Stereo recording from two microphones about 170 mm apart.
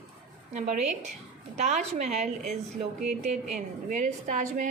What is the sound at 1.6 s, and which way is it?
A woman's voice, 40° right (ahead or behind).